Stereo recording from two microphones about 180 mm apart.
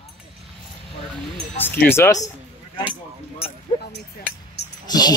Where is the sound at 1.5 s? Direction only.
10° left (ahead or behind).